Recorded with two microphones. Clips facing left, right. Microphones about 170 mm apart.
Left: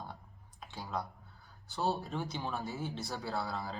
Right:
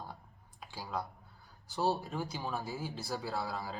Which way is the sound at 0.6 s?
5° right (ahead or behind).